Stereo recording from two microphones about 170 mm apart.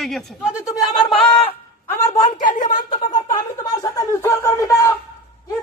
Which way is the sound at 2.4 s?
50° left (ahead or behind).